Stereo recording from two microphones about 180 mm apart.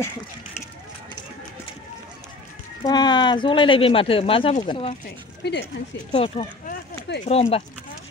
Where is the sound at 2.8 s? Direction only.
25° left (ahead or behind).